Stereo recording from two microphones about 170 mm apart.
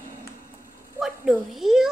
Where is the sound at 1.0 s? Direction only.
Centre (ahead or behind).